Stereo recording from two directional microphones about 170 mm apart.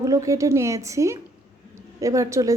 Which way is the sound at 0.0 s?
20° right (ahead or behind).